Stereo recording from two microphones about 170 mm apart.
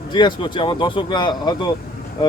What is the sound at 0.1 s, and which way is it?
Speech, 25° left (ahead or behind).